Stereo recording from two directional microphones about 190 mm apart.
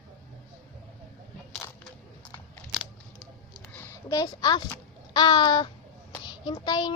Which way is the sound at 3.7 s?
10° left (ahead or behind).